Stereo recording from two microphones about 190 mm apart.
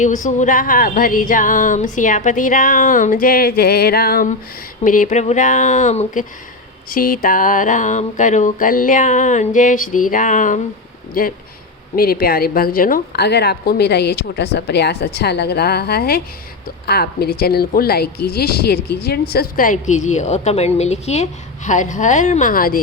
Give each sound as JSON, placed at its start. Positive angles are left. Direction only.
{"t": 0.0, "sound": "music", "side_deg": 40}
{"t": 4.8, "sound": "a woman's voice", "side_deg": 45}
{"t": 6.9, "sound": "music", "side_deg": 50}
{"t": 11.9, "sound": "a woman's voice", "side_deg": 50}